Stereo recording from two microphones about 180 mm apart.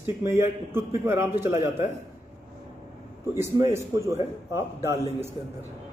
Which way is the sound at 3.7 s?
15° right (ahead or behind).